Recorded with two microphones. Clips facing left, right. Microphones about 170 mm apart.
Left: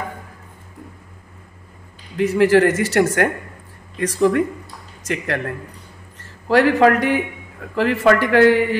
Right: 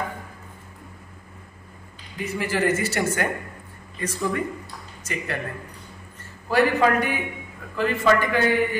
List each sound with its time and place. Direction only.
2.1 s speech: 85° left
5.0 s speech: 85° left
6.5 s speech: 85° left